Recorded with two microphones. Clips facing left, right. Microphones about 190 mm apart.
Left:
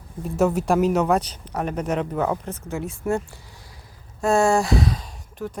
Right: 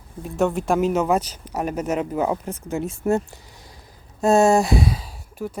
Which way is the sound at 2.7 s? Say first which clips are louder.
Right 3 dB; 25° right (ahead or behind).